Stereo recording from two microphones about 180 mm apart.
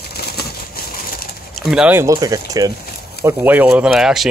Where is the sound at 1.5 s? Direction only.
Centre (ahead or behind).